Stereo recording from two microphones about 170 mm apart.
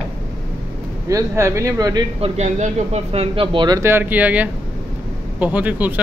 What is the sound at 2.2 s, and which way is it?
Speech, 40° right (ahead or behind).